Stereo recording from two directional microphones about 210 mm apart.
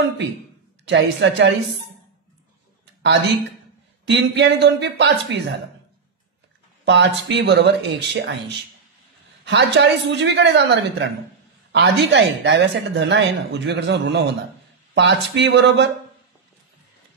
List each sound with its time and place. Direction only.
0.8 s speech: 55° right (ahead or behind)
4.0 s speech: 55° right (ahead or behind)
6.8 s speech: 55° right (ahead or behind)
9.4 s speech: 55° right (ahead or behind)